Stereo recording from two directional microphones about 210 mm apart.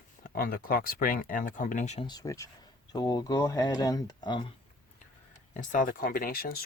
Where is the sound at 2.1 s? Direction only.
15° left (ahead or behind).